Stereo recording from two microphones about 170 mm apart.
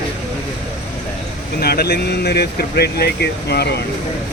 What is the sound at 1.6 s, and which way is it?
Speech, 65° left (ahead or behind).